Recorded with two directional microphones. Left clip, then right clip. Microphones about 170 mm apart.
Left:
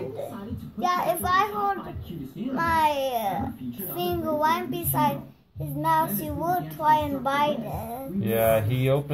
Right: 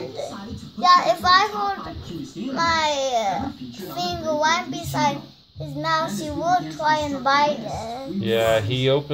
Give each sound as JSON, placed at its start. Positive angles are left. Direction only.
{"t": 0.8, "sound": "a child's voice", "side_deg": 0}
{"t": 2.5, "sound": "a child's voice", "side_deg": 0}
{"t": 3.9, "sound": "child singing", "side_deg": 0}
{"t": 5.8, "sound": "a child's voice", "side_deg": 0}
{"t": 8.2, "sound": "speech", "side_deg": -15}